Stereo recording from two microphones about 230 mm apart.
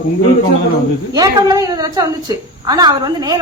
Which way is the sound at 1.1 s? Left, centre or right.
Centre.